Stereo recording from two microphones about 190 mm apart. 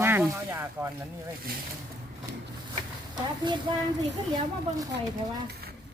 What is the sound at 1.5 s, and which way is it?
Speech, 50° right (ahead or behind).